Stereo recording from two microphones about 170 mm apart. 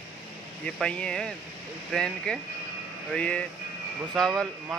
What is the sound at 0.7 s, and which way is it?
Speech, 5° left (ahead or behind).